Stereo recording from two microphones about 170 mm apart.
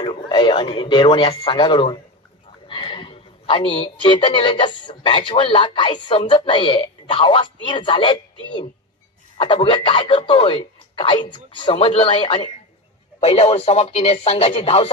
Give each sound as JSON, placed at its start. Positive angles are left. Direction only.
{"t": 0.0, "sound": "speech", "side_deg": 25}
{"t": 2.7, "sound": "a sound", "side_deg": 30}
{"t": 4.0, "sound": "speech", "side_deg": 30}